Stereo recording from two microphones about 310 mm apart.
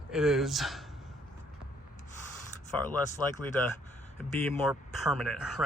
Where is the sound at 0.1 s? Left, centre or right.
Centre.